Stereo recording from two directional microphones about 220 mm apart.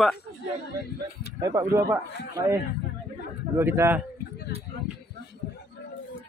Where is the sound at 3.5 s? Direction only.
10° right (ahead or behind).